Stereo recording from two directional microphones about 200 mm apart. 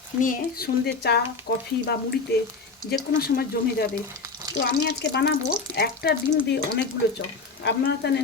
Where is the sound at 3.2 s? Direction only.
50° left (ahead or behind).